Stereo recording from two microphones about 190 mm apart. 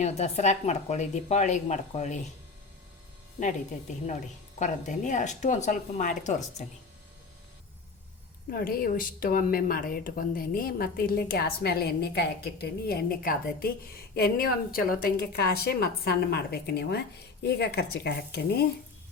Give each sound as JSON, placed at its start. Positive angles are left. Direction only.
{"t": 0.0, "sound": "speech", "side_deg": 35}
{"t": 4.6, "sound": "speech", "side_deg": 40}
{"t": 8.4, "sound": "a woman's voice", "side_deg": 50}